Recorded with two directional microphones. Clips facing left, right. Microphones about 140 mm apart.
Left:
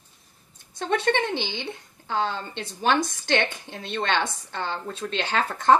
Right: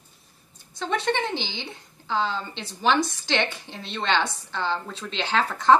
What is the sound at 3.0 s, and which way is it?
Speech, 20° left (ahead or behind).